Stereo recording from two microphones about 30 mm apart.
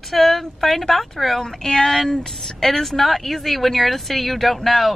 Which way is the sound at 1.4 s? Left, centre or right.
Left.